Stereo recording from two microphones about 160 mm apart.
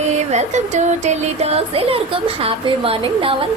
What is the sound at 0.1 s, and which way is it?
Music, 45° right (ahead or behind).